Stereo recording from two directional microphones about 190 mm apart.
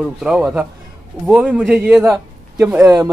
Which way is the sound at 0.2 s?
5° right (ahead or behind).